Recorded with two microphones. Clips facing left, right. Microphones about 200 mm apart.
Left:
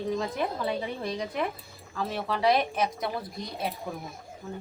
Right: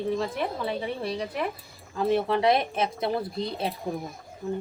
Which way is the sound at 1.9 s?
25° right (ahead or behind).